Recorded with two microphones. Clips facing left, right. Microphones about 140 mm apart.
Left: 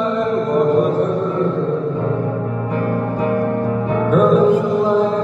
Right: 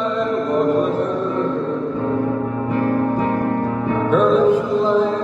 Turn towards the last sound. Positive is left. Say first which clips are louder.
# left 2 dB
turn(degrees=55)  # may be behind; listen again after turning